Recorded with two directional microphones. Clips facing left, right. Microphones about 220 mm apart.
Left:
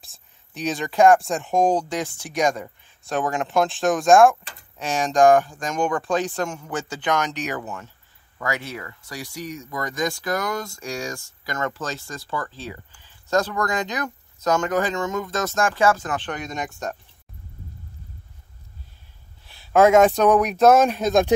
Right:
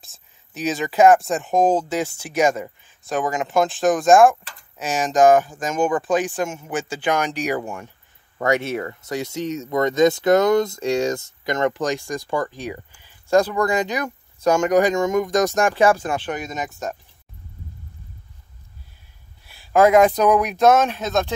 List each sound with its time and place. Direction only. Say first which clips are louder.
0.0 s speech: right 1 dB; centre (ahead or behind); by 6.7 s 20° right (ahead or behind)
6.7 s speech: right 3 dB; 10° right (ahead or behind)
8.5 s speech: right 8 dB; 25° right (ahead or behind); by 16.9 s 5° right (ahead or behind)
19.7 s speech: even; centre (ahead or behind)